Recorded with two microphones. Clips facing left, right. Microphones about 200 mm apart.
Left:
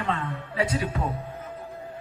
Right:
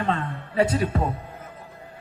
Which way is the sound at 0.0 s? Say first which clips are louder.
Right 3 dB; 30° right (ahead or behind).